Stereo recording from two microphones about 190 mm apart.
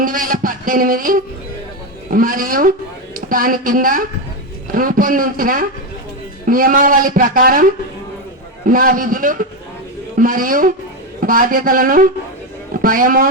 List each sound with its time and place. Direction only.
0.0 s a woman's voice: 45° right (ahead or behind)